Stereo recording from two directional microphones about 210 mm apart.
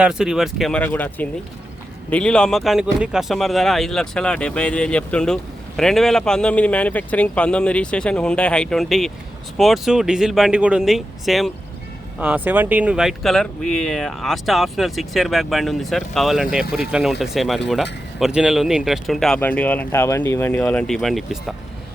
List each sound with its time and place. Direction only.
0.0 s speech: 5° right (ahead or behind)